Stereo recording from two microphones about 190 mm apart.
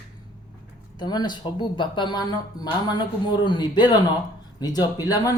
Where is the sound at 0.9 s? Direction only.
20° left (ahead or behind).